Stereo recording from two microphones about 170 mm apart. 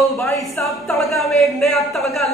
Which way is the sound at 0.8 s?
Centre (ahead or behind).